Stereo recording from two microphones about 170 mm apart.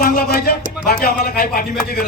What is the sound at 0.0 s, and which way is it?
Speech, 60° left (ahead or behind).